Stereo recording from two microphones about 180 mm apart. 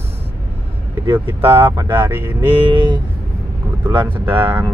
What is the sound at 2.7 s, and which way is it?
Speech, 30° right (ahead or behind).